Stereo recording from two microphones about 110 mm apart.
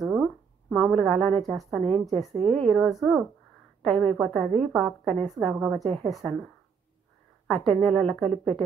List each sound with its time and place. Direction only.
0.0 s a sound: centre (ahead or behind)
0.8 s a woman's voice: 5° left (ahead or behind)
7.4 s a woman's voice: 5° left (ahead or behind)